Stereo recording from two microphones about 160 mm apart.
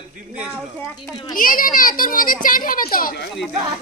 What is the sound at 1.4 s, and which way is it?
A child's voice, 60° left (ahead or behind).